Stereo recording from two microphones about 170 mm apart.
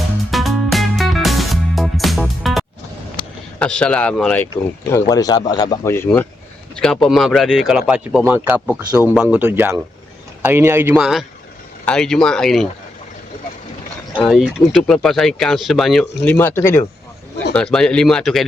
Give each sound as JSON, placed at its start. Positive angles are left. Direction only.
{"t": 0.3, "sound": "music", "side_deg": 0}
{"t": 3.6, "sound": "speech", "side_deg": 5}
{"t": 4.9, "sound": "speech", "side_deg": 20}
{"t": 6.7, "sound": "speech", "side_deg": 5}
{"t": 8.6, "sound": "speech", "side_deg": 0}
{"t": 14.3, "sound": "speech", "side_deg": 0}
{"t": 16.2, "sound": "speech", "side_deg": 10}
{"t": 17.5, "sound": "speech", "side_deg": 5}